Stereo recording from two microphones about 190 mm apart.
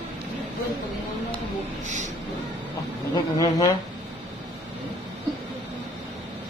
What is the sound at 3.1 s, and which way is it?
Speech, 20° left (ahead or behind).